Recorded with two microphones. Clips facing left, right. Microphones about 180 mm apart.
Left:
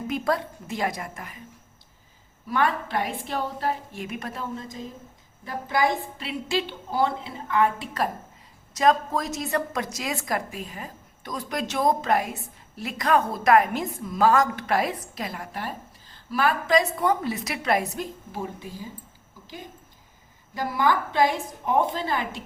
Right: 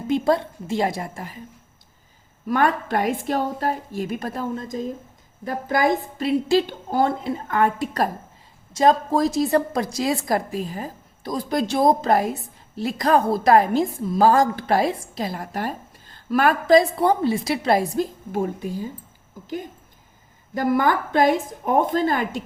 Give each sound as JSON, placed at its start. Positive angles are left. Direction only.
{"t": 0.1, "sound": "a woman's voice", "side_deg": -25}
{"t": 2.5, "sound": "a woman's voice", "side_deg": -45}
{"t": 8.7, "sound": "a woman's voice", "side_deg": -30}
{"t": 18.3, "sound": "a woman's voice", "side_deg": -50}
{"t": 20.5, "sound": "a woman's voice", "side_deg": -50}